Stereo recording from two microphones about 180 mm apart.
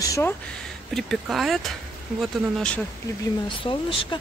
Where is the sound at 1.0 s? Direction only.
Centre (ahead or behind).